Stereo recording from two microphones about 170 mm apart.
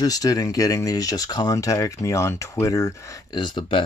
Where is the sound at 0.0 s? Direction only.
20° left (ahead or behind).